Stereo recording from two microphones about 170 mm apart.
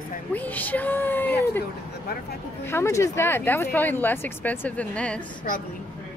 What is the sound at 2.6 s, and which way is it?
Speech, 15° left (ahead or behind).